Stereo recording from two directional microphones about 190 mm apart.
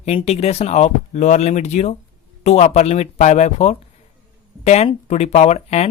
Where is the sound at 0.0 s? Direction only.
35° left (ahead or behind).